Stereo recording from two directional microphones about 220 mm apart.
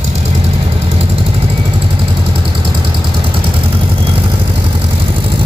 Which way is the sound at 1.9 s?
25° right (ahead or behind).